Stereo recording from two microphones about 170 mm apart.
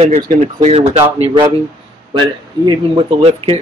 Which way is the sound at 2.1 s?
25° right (ahead or behind).